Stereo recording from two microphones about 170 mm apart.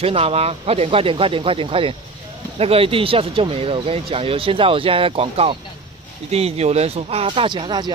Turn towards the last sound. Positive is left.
turn(degrees=-25)  # may be behind; listen again after turning